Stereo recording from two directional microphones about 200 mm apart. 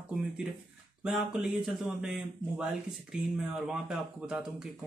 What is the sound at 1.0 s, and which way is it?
Speech, 5° right (ahead or behind).